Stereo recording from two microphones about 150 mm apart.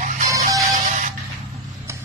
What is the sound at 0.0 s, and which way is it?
Music, 55° right (ahead or behind).